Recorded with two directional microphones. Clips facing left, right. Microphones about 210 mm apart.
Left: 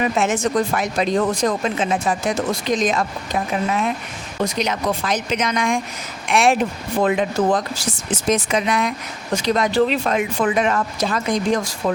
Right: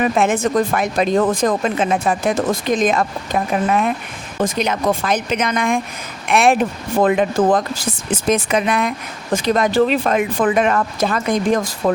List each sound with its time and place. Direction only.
0.0 s speech: 55° right (ahead or behind)